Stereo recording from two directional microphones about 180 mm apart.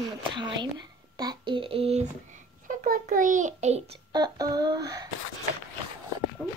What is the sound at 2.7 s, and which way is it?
A child's voice, 50° right (ahead or behind).